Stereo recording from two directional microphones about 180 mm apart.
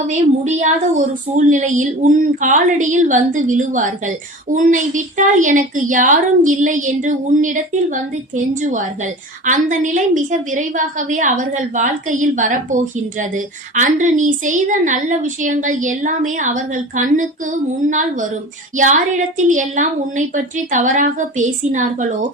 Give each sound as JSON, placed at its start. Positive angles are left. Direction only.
{"t": 0.1, "sound": "a woman's voice", "side_deg": -40}
{"t": 9.5, "sound": "a woman's voice", "side_deg": -45}